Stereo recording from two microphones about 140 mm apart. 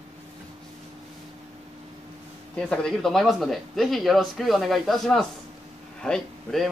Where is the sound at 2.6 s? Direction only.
5° left (ahead or behind).